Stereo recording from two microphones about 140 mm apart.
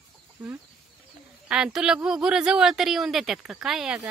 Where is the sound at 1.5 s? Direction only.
5° right (ahead or behind).